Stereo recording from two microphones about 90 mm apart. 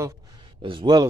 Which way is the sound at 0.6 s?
75° right (ahead or behind).